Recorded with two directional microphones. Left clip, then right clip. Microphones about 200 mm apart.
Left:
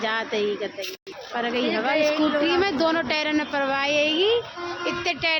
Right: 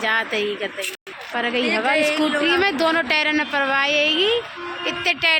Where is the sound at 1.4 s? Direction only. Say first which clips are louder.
Right 4 dB; 20° right (ahead or behind).